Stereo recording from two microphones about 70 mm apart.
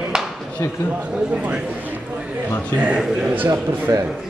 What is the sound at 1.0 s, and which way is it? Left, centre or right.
A man's voice, centre.